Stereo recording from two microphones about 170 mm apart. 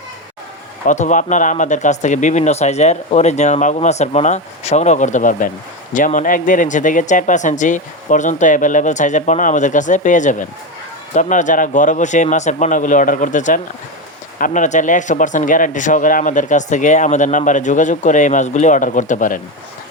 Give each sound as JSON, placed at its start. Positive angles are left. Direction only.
{"t": 0.9, "sound": "speech", "side_deg": 45}